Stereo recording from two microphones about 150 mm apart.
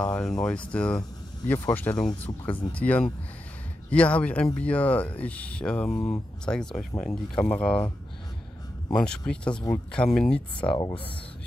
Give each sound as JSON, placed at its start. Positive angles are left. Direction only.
{"t": 0.0, "sound": "speech", "side_deg": 5}
{"t": 8.9, "sound": "speech", "side_deg": 5}